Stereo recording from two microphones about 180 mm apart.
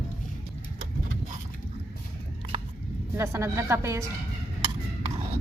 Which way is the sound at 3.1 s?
15° right (ahead or behind).